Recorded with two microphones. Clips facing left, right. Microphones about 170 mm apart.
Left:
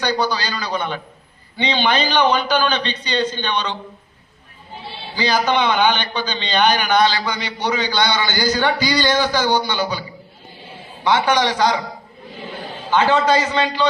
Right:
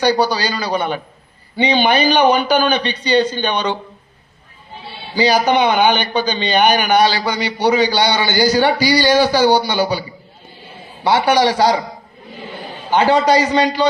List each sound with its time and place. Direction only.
0.0 s a man's voice: 10° right (ahead or behind)
5.1 s a man's voice: 10° right (ahead or behind)
11.0 s a man's voice: 10° right (ahead or behind)
12.9 s a man's voice: 15° right (ahead or behind)